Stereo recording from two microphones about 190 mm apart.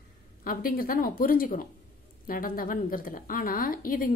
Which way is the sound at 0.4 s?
50° left (ahead or behind).